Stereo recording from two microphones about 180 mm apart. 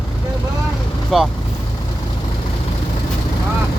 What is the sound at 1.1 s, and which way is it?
Speech, centre (ahead or behind).